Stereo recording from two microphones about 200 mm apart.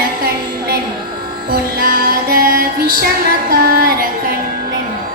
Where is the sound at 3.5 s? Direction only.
50° right (ahead or behind).